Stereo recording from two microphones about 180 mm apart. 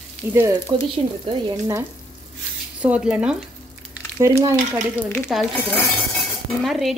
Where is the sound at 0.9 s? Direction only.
25° right (ahead or behind).